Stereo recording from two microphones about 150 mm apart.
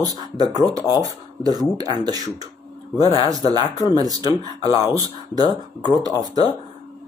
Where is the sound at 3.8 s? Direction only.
25° left (ahead or behind).